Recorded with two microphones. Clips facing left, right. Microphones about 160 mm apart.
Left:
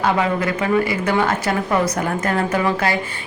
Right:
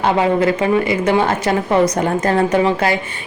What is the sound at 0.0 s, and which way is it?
A woman's voice, 25° right (ahead or behind).